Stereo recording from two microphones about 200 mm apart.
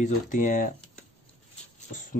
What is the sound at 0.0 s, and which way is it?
Speech, 40° left (ahead or behind).